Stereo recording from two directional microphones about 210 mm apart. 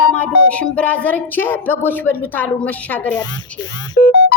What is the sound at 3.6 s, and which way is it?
Speech, 20° left (ahead or behind).